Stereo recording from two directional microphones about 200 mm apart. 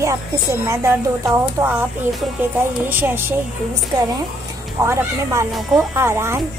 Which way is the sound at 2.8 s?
10° right (ahead or behind).